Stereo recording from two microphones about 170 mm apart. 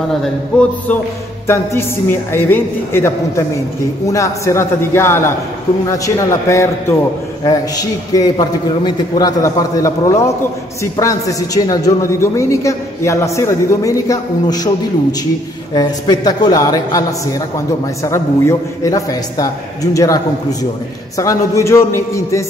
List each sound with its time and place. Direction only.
0.2 s a woman's voice: 5° left (ahead or behind)
21.2 s a woman's voice: 20° left (ahead or behind)